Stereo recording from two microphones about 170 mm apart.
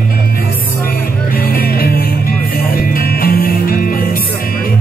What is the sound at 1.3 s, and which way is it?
Music, 60° left (ahead or behind).